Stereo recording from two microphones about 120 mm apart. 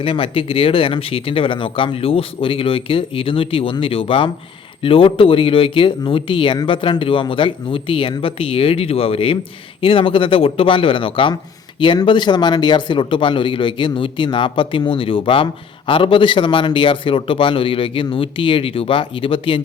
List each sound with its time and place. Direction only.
0.0 s speech: 50° left (ahead or behind)